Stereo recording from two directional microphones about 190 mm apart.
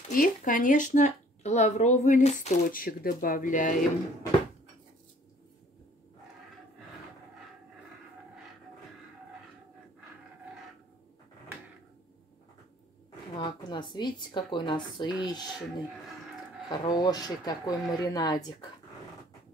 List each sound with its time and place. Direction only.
0.1 s a woman's voice: 45° left (ahead or behind)
13.4 s speech: 25° left (ahead or behind)
16.6 s speech: 25° left (ahead or behind)